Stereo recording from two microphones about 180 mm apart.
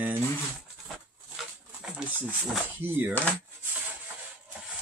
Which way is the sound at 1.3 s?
5° right (ahead or behind).